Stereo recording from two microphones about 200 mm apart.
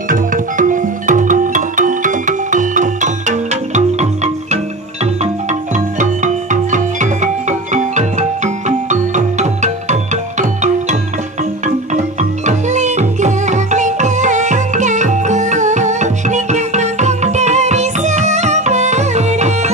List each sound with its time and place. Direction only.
0.1 s music: 40° right (ahead or behind)